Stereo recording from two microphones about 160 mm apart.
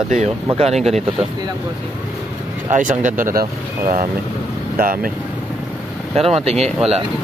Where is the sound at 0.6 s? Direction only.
40° right (ahead or behind).